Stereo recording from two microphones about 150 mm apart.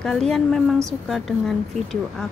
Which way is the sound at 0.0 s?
5° left (ahead or behind).